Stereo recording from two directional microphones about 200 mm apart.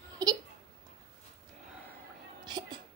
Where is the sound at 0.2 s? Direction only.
15° right (ahead or behind).